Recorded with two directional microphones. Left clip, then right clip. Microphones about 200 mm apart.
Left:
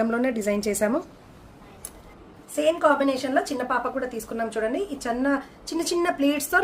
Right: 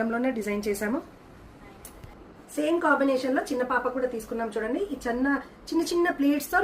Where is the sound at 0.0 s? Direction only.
65° left (ahead or behind).